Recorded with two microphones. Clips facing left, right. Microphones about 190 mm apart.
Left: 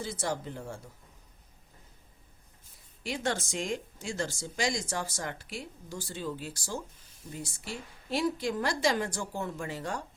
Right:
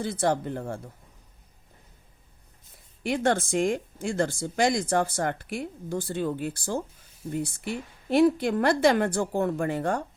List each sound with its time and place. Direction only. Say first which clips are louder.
0.0 s speech: right 8 dB; 60° right (ahead or behind)
3.0 s speech: right 8 dB; 55° right (ahead or behind)